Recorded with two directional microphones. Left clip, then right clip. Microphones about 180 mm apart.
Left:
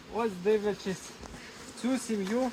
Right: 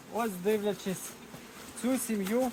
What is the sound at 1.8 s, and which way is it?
Bee, 20° right (ahead or behind).